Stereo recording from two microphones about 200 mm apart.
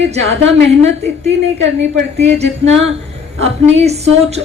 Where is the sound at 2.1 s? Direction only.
30° right (ahead or behind).